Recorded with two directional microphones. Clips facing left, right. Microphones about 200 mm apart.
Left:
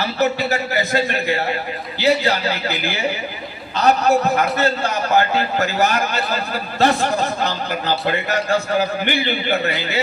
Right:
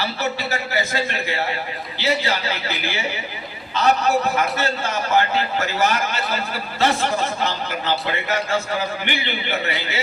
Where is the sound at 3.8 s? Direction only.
40° left (ahead or behind).